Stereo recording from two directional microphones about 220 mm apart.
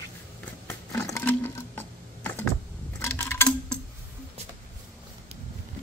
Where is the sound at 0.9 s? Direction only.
10° left (ahead or behind).